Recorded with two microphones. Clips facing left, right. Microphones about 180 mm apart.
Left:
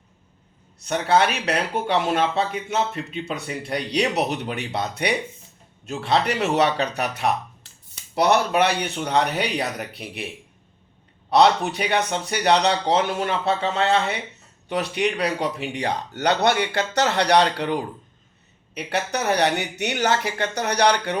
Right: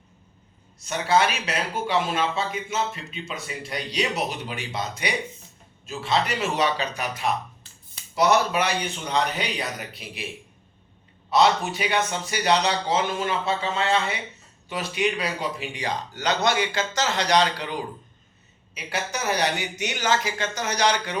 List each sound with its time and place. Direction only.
0.9 s speech: 60° left (ahead or behind)
11.3 s speech: 60° left (ahead or behind)